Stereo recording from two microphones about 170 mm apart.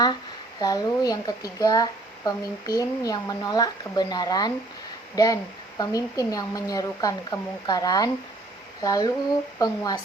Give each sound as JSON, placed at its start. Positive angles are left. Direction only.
{"t": 0.6, "sound": "speech", "side_deg": 20}